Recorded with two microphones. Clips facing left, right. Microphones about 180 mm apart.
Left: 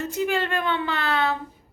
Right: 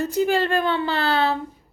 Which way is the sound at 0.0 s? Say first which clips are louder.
Right 4 dB; 35° right (ahead or behind).